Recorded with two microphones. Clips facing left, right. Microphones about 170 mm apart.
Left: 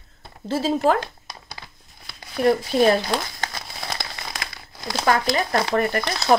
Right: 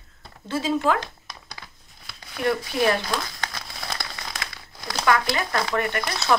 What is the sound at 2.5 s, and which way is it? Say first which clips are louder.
Speech: left 5 dB; 30° left (ahead or behind).